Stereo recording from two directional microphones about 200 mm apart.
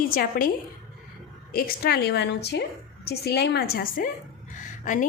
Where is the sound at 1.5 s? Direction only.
50° left (ahead or behind).